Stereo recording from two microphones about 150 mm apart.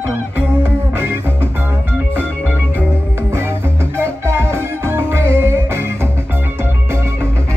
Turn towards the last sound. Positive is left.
turn(degrees=-15)  # may be behind; listen again after turning